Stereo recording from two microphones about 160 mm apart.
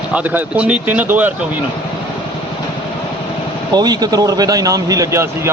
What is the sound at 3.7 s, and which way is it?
Speech, 25° right (ahead or behind).